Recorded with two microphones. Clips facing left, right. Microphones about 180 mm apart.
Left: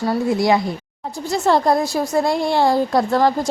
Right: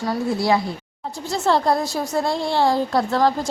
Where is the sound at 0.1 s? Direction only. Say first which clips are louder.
Left 3 dB; 15° left (ahead or behind).